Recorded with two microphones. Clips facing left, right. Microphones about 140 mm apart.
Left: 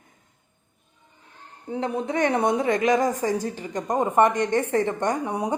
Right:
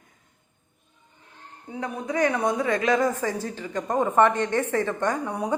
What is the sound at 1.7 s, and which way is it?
A woman's voice, 30° left (ahead or behind).